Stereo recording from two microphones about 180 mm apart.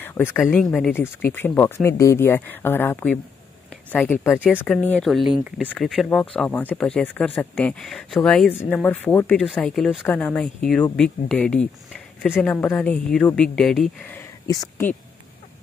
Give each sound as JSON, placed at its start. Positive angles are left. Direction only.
{"t": 0.0, "sound": "speech", "side_deg": 15}
{"t": 0.6, "sound": "speech", "side_deg": 0}
{"t": 0.9, "sound": "speech", "side_deg": 15}
{"t": 14.5, "sound": "speech", "side_deg": 20}